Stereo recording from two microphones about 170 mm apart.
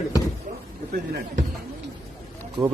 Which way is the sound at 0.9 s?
55° right (ahead or behind).